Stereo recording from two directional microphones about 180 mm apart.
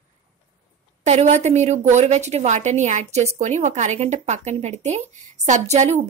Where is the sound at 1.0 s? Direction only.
40° right (ahead or behind).